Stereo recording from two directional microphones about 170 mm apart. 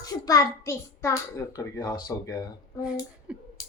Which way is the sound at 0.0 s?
20° left (ahead or behind).